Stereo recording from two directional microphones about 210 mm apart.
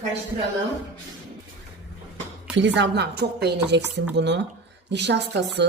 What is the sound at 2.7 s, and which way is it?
A woman's voice, 50° right (ahead or behind).